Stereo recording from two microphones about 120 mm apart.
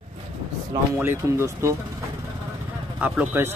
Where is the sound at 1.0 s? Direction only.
20° right (ahead or behind).